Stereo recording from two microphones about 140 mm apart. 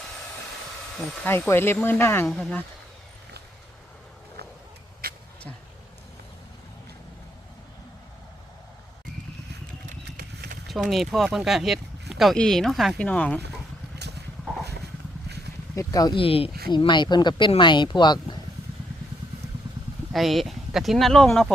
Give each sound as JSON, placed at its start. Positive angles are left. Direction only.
{"t": 0.9, "sound": "speech", "side_deg": 15}
{"t": 2.3, "sound": "speech", "side_deg": 5}
{"t": 5.0, "sound": "vehicle", "side_deg": -90}
{"t": 10.7, "sound": "speech", "side_deg": 0}
{"t": 15.7, "sound": "speech", "side_deg": 25}
{"t": 16.1, "sound": "speech", "side_deg": 40}
{"t": 20.1, "sound": "speech", "side_deg": 0}